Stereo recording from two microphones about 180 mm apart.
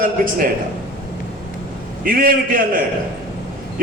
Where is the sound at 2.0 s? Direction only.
50° right (ahead or behind).